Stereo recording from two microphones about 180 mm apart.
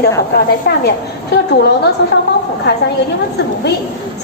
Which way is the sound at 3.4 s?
65° left (ahead or behind).